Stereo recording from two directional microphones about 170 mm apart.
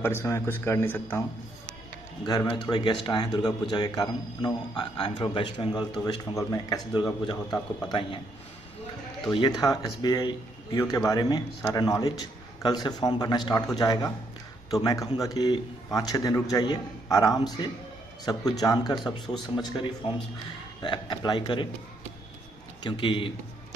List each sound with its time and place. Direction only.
0.0 s a man's voice: 15° left (ahead or behind)
2.2 s a man's voice: 25° left (ahead or behind)
9.3 s a man's voice: 25° left (ahead or behind)
22.8 s a man's voice: 30° left (ahead or behind)